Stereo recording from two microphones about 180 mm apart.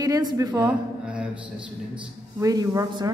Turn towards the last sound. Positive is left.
turn(degrees=-20)  # may be behind; listen again after turning